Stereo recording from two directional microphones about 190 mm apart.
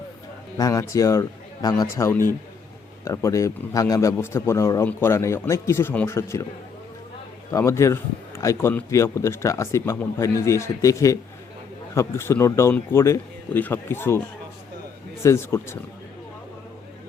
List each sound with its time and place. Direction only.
0.5 s a man's voice: 15° left (ahead or behind)
7.5 s a man's voice: 15° left (ahead or behind)
15.2 s a man's voice: 15° left (ahead or behind)